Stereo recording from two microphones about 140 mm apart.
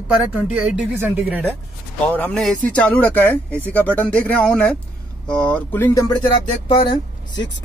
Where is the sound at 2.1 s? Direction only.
10° left (ahead or behind).